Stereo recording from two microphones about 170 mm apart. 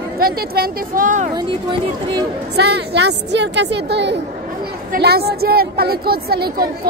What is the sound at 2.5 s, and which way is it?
A woman's voice, 75° right (ahead or behind).